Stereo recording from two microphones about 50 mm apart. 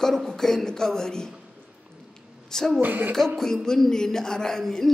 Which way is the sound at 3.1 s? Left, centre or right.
Centre.